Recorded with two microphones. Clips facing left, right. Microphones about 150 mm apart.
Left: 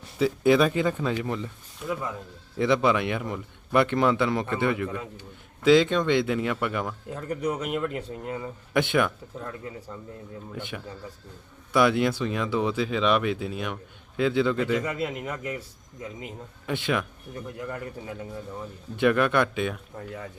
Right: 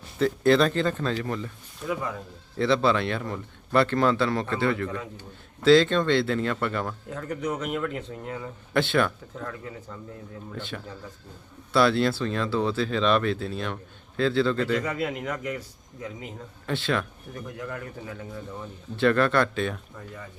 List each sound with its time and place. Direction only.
0.2 s a man's voice: 10° left (ahead or behind)
1.8 s speech: centre (ahead or behind)
2.6 s a man's voice: 15° left (ahead or behind)
18.9 s a man's voice: 15° left (ahead or behind)